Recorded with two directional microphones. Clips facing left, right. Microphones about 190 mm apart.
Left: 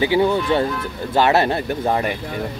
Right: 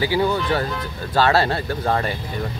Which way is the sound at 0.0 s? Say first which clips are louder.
Left 3 dB; 20° left (ahead or behind).